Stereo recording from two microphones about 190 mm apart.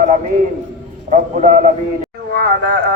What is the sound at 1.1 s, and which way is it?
Speech, 45° right (ahead or behind).